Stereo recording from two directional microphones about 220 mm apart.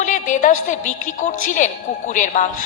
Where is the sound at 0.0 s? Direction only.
35° left (ahead or behind).